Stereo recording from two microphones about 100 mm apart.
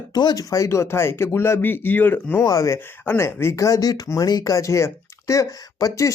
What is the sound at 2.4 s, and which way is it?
Speech, 35° left (ahead or behind).